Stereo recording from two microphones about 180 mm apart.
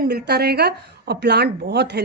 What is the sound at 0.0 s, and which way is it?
Speech, 65° right (ahead or behind).